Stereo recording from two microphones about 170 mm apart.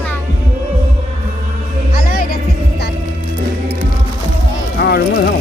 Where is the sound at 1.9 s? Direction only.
60° left (ahead or behind).